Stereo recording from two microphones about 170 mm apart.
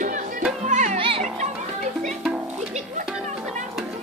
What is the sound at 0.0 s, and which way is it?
Music, 50° right (ahead or behind).